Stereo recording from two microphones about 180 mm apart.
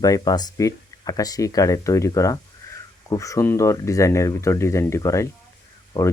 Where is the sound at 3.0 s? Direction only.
20° left (ahead or behind).